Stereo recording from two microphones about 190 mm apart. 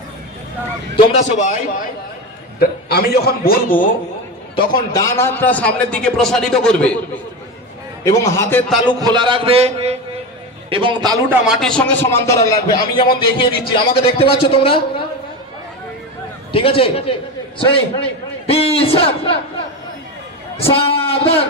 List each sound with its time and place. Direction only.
0.9 s speech: 35° left (ahead or behind)
2.6 s a man's voice: 55° left (ahead or behind)
4.6 s a man's voice: 20° left (ahead or behind); by 7.0 s 5° left (ahead or behind)
8.0 s a man's voice: 15° left (ahead or behind)
9.0 s music: 25° right (ahead or behind)
11.2 s a man's voice: centre (ahead or behind); by 15.0 s 30° left (ahead or behind)
16.5 s a man's voice: 30° left (ahead or behind)
20.5 s speech: 30° left (ahead or behind)